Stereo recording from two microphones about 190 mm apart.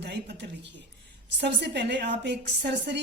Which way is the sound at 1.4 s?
60° right (ahead or behind).